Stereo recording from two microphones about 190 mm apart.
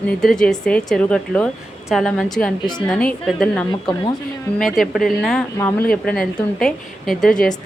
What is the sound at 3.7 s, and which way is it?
Speech, 25° left (ahead or behind).